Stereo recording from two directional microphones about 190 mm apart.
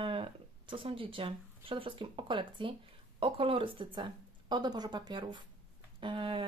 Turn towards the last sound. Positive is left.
turn(degrees=-25)  # may be behind; listen again after turning